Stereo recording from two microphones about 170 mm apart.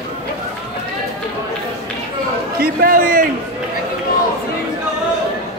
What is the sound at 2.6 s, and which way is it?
Speech, 60° right (ahead or behind).